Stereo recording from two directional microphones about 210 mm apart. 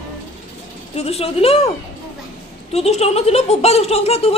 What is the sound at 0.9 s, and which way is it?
Speech, 30° left (ahead or behind).